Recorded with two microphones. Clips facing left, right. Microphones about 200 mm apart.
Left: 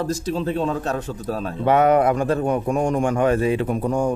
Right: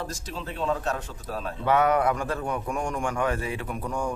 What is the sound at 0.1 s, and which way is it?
A man's voice, 35° left (ahead or behind).